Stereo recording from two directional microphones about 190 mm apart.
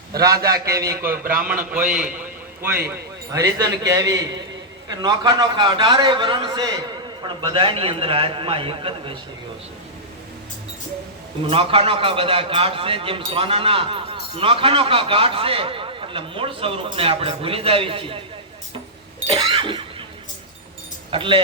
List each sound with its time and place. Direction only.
0.1 s a man's voice: 20° right (ahead or behind)
1.2 s a man's voice: 50° right (ahead or behind)
1.7 s a man's voice: 5° right (ahead or behind); by 9.1 s 30° right (ahead or behind)
11.4 s a man's voice: 30° right (ahead or behind)
19.3 s a man's voice: 30° right (ahead or behind)
21.1 s a man's voice: 25° right (ahead or behind)